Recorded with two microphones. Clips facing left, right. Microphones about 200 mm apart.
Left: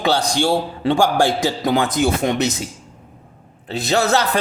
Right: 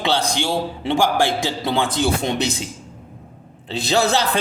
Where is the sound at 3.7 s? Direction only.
30° right (ahead or behind).